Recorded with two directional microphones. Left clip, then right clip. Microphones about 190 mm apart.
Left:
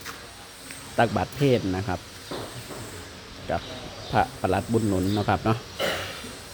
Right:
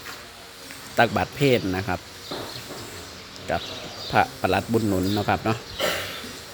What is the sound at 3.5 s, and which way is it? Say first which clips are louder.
Speech: right 2 dB; centre (ahead or behind).